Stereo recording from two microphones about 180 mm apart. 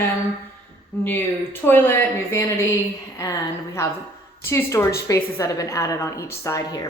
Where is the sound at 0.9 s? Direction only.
10° left (ahead or behind).